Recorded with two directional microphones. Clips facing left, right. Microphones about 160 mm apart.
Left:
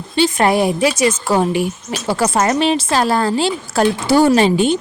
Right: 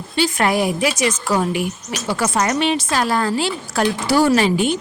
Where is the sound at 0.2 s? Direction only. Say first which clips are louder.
Left 4 dB; 25° left (ahead or behind).